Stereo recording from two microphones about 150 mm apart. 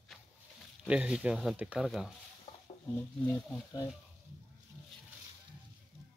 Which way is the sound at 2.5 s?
30° left (ahead or behind).